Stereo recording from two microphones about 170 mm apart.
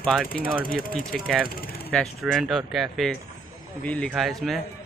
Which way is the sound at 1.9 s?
5° left (ahead or behind).